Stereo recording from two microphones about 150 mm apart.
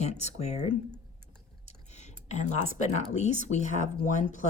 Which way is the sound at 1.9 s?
50° left (ahead or behind).